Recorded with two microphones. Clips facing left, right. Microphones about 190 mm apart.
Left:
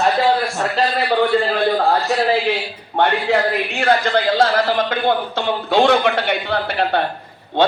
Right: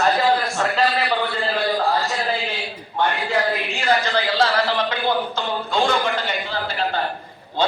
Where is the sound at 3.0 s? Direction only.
65° left (ahead or behind).